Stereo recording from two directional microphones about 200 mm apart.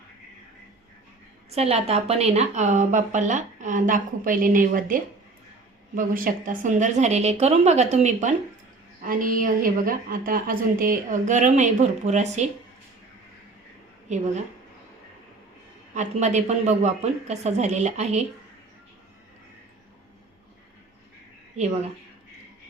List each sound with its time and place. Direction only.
1.5 s a woman's voice: 30° right (ahead or behind)
14.1 s a woman's voice: 35° right (ahead or behind)
16.0 s a woman's voice: 35° right (ahead or behind)